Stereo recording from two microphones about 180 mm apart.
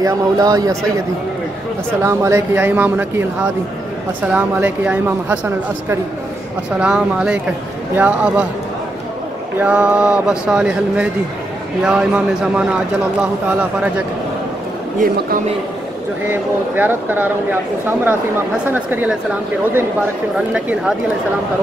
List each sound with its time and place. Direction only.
0.0 s speech: 20° right (ahead or behind)
2.0 s speech: 15° right (ahead or behind)
4.3 s speech: 10° right (ahead or behind)
9.6 s speech: 5° right (ahead or behind)
16.3 s speech: 10° right (ahead or behind)